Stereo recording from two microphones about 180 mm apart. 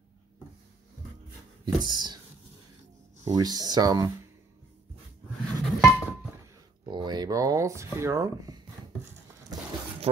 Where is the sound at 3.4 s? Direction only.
20° right (ahead or behind).